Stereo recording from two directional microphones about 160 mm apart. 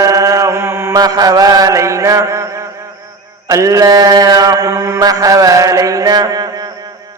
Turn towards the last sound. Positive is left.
turn(degrees=-25)  # may be behind; listen again after turning